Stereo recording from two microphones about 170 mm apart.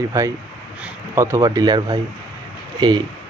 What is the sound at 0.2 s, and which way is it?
Speech, 20° right (ahead or behind).